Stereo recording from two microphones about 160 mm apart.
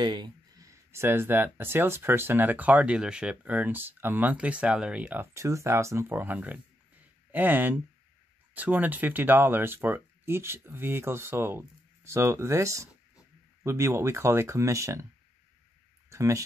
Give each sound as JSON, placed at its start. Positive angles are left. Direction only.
{"t": 0.0, "sound": "speech", "side_deg": -30}
{"t": 16.1, "sound": "speech", "side_deg": -20}